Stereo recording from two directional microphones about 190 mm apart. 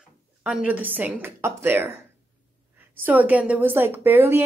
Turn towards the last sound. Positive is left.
turn(degrees=-10)  # may be behind; listen again after turning